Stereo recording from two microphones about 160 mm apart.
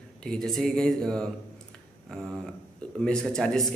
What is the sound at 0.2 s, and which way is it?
Speech, 5° left (ahead or behind).